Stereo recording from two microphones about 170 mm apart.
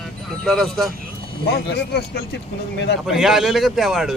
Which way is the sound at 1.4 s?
90° left.